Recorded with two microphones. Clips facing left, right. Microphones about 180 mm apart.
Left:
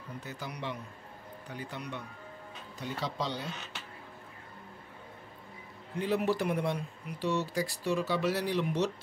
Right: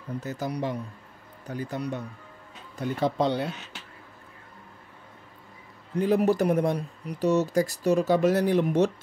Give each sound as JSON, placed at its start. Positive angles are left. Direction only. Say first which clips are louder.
{"t": 0.2, "sound": "speech", "louder": "right 10 dB", "side_deg": -40}
{"t": 2.8, "sound": "speech", "louder": "right 10 dB", "side_deg": -55}
{"t": 5.9, "sound": "speech", "louder": "right 7 dB", "side_deg": -45}